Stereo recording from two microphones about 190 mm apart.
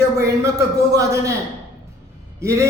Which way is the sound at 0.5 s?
15° right (ahead or behind).